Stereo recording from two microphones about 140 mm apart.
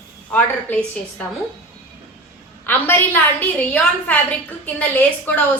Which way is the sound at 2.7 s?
15° left (ahead or behind).